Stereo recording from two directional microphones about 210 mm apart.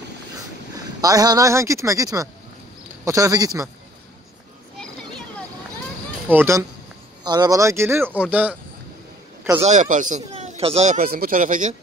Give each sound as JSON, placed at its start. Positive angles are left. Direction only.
{"t": 1.0, "sound": "speech", "side_deg": -15}
{"t": 6.2, "sound": "speech", "side_deg": -10}
{"t": 9.6, "sound": "speech", "side_deg": -35}